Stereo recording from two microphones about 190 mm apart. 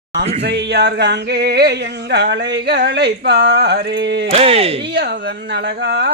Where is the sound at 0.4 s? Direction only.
60° right (ahead or behind).